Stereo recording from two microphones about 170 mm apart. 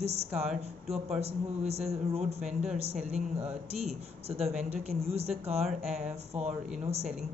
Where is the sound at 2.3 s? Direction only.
Centre (ahead or behind).